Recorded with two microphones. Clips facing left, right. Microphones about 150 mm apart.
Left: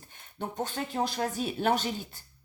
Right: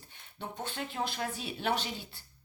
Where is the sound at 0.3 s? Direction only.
45° left (ahead or behind).